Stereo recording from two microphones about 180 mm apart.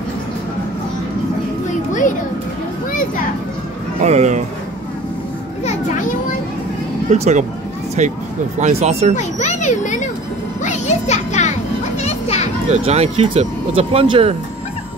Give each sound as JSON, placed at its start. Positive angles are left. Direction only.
{"t": 4.0, "sound": "speech", "side_deg": -40}
{"t": 7.1, "sound": "speech", "side_deg": -40}
{"t": 9.1, "sound": "a child's voice", "side_deg": 40}
{"t": 10.6, "sound": "music", "side_deg": 40}
{"t": 12.7, "sound": "speech", "side_deg": -35}